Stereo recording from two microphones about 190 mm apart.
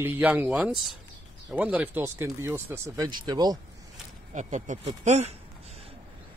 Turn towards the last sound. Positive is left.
turn(degrees=-30)  # may be behind; listen again after turning